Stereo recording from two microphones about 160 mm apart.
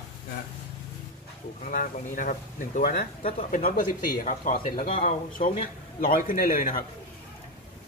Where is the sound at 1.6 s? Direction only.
55° left (ahead or behind).